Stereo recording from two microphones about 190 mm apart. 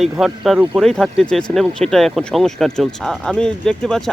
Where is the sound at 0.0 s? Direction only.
Centre (ahead or behind).